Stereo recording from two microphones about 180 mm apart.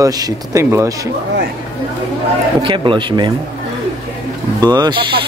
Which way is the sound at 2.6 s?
30° right (ahead or behind).